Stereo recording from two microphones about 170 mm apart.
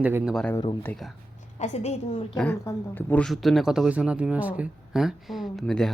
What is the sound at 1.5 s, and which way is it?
Speech, 40° left (ahead or behind).